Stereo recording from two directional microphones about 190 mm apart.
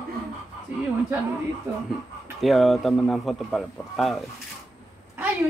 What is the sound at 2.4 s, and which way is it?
A man's voice, centre (ahead or behind).